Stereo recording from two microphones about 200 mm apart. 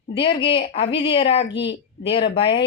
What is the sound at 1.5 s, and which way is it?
Speech, 60° left (ahead or behind).